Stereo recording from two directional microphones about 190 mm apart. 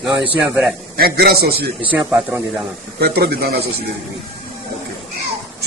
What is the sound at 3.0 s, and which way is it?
Speech, 55° right (ahead or behind).